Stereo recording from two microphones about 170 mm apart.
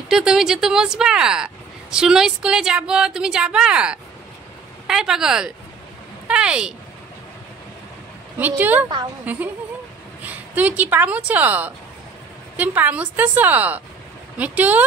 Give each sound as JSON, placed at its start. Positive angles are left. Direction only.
{"t": 0.1, "sound": "speech", "side_deg": -5}
{"t": 6.2, "sound": "a sound", "side_deg": -5}
{"t": 8.4, "sound": "speech", "side_deg": -10}
{"t": 8.8, "sound": "a woman's voice", "side_deg": -25}
{"t": 9.2, "sound": "speech", "side_deg": -10}